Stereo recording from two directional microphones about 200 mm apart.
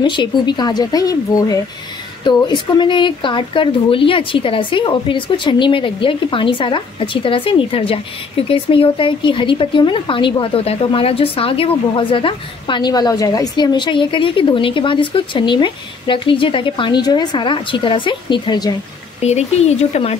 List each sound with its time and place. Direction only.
0.0 s speech: 25° left (ahead or behind)
19.2 s speech: 35° left (ahead or behind)